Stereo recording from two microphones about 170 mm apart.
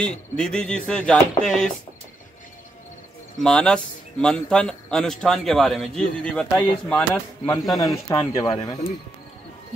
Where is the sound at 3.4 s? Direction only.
5° left (ahead or behind).